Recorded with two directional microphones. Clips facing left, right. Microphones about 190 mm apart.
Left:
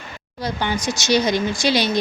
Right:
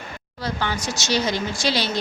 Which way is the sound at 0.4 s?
15° left (ahead or behind).